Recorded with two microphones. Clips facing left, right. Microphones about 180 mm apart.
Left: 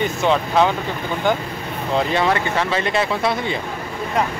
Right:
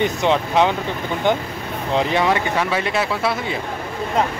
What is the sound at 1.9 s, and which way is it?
Speech, 15° right (ahead or behind).